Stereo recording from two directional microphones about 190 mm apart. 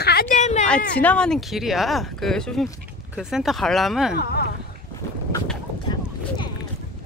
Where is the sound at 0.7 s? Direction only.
5° left (ahead or behind).